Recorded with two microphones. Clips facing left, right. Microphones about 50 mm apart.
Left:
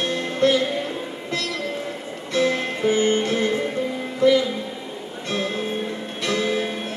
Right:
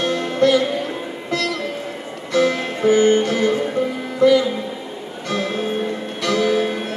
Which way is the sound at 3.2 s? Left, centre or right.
Left.